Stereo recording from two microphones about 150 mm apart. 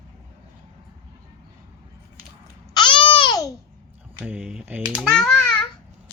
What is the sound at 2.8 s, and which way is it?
Babbling, 35° left (ahead or behind).